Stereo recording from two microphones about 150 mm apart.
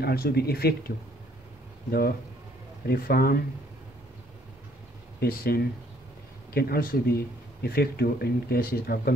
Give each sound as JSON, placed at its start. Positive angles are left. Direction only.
{"t": 0.0, "sound": "speech", "side_deg": 90}
{"t": 5.2, "sound": "speech", "side_deg": 90}